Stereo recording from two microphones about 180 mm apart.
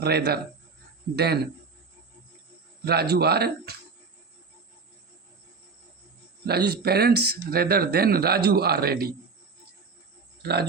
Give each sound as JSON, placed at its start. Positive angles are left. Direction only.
{"t": 0.0, "sound": "speech", "side_deg": -65}
{"t": 2.8, "sound": "speech", "side_deg": -60}
{"t": 6.4, "sound": "speech", "side_deg": -60}
{"t": 10.4, "sound": "speech", "side_deg": -65}